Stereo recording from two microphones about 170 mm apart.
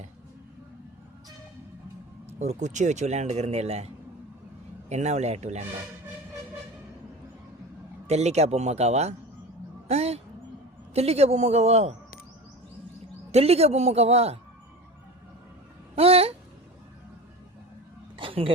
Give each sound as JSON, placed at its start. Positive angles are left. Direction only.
{"t": 2.4, "sound": "speech", "side_deg": -45}
{"t": 4.9, "sound": "speech", "side_deg": -40}
{"t": 8.0, "sound": "speech", "side_deg": -40}
{"t": 13.3, "sound": "speech", "side_deg": -35}
{"t": 16.0, "sound": "a sound", "side_deg": -35}
{"t": 18.2, "sound": "a sound", "side_deg": -30}